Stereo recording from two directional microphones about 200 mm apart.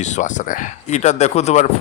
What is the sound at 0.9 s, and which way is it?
Speech, 35° left (ahead or behind).